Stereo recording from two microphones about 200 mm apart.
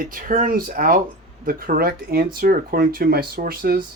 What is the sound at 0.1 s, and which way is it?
Speech, 45° right (ahead or behind).